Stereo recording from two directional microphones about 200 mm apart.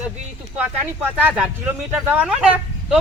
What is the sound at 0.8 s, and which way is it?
A man's voice, 10° right (ahead or behind).